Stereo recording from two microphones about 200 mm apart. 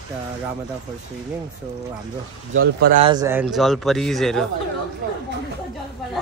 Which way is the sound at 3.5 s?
Centre (ahead or behind).